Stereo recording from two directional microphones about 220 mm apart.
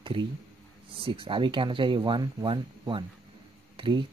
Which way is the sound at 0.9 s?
25° right (ahead or behind).